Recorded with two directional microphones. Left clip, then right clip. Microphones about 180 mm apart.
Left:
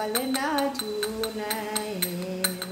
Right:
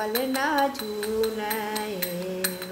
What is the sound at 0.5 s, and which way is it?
Music, 20° left (ahead or behind).